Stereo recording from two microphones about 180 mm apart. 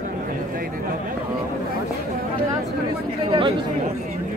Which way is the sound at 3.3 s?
30° right (ahead or behind).